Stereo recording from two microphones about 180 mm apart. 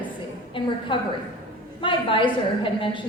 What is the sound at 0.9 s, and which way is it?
A woman's voice, 25° left (ahead or behind).